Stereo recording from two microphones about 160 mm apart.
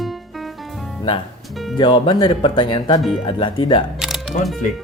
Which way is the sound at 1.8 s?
30° left (ahead or behind).